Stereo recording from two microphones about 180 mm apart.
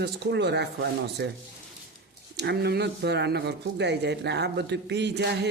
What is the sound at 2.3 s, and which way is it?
Speech, 70° right (ahead or behind).